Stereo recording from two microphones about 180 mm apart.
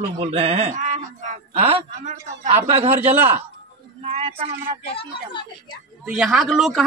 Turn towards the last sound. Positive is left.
turn(degrees=0)  # may be behind; listen again after turning